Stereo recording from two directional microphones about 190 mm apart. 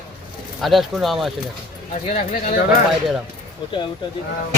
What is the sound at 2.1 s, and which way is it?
Speech, 35° left (ahead or behind).